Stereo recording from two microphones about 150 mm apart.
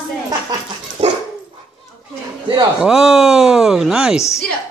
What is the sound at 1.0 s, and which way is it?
Dog, 35° right (ahead or behind).